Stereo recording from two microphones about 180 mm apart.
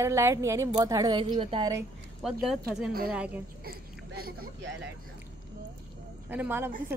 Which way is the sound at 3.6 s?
55° right (ahead or behind).